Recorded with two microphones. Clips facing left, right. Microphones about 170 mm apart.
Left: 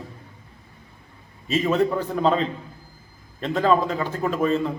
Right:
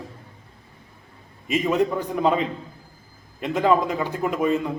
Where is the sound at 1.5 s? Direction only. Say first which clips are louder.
Even; 15° right (ahead or behind).